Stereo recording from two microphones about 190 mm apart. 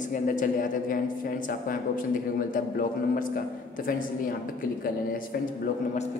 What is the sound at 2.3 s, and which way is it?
A man's voice, 45° left (ahead or behind).